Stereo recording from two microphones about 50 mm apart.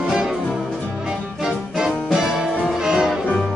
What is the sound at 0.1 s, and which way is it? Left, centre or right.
Music, centre.